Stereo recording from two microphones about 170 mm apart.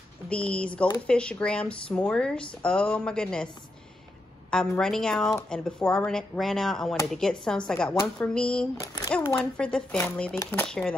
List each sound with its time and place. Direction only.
0.3 s a woman's voice: 5° left (ahead or behind)
4.5 s speech: 5° left (ahead or behind)
8.8 s a sound: 20° left (ahead or behind)
9.4 s a woman's voice: 5° left (ahead or behind)